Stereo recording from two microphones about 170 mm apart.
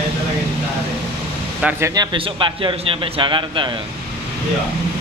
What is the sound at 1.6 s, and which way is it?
Speech, 10° right (ahead or behind).